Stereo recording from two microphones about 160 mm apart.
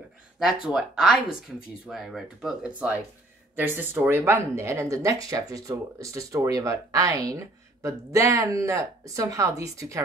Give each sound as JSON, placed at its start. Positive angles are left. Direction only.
{"t": 0.4, "sound": "speech", "side_deg": -5}